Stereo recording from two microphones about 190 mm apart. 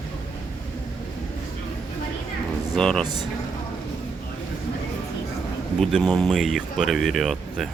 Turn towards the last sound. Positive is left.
turn(degrees=0)  # may be behind; listen again after turning